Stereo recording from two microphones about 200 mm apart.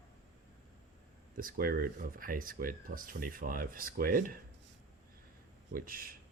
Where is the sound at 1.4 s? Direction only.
45° right (ahead or behind).